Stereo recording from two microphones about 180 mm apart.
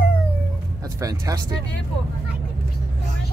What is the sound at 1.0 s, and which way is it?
Speech, 20° right (ahead or behind).